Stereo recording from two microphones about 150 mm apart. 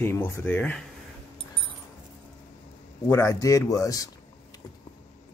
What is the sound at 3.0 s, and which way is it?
Speech, 20° left (ahead or behind).